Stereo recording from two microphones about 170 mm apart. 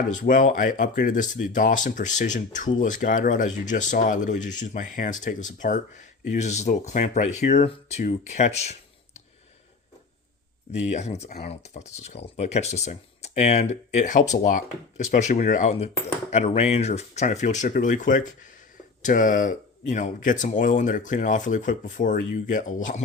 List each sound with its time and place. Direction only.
0.1 s speech: 50° left (ahead or behind)
10.7 s speech: 40° left (ahead or behind)